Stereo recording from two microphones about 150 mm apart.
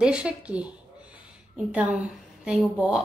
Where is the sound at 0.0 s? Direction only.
5° right (ahead or behind).